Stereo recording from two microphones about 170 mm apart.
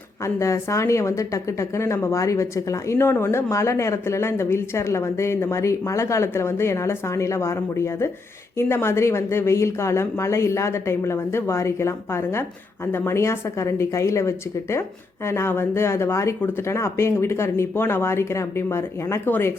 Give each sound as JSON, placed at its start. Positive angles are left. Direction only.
{"t": 0.3, "sound": "speech", "side_deg": 15}